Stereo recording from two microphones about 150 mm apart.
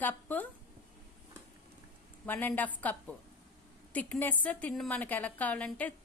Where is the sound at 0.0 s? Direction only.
10° left (ahead or behind).